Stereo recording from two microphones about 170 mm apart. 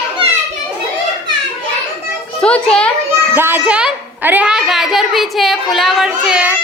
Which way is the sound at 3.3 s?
10° right (ahead or behind).